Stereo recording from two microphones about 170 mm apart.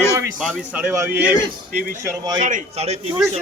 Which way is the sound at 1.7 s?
55° right (ahead or behind).